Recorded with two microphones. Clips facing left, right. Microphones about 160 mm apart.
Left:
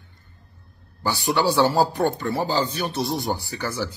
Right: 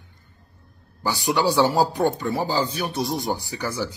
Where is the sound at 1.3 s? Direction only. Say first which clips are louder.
Even; 15° right (ahead or behind).